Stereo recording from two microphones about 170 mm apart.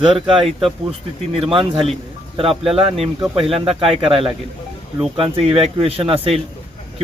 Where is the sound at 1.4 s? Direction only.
30° right (ahead or behind).